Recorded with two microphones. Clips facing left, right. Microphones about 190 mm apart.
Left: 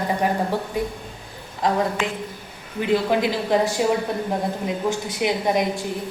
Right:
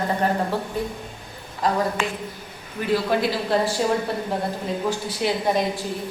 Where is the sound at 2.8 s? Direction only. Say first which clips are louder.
Left 2 dB; 20° left (ahead or behind).